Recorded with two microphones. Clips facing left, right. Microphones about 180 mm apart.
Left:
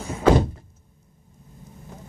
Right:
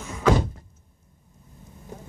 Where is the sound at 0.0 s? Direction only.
30° left (ahead or behind).